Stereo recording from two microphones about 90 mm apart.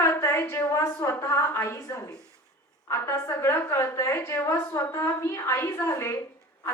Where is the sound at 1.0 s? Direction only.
30° left (ahead or behind).